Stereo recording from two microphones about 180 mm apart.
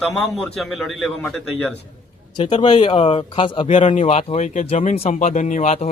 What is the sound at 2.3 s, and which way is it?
Speech, 25° left (ahead or behind).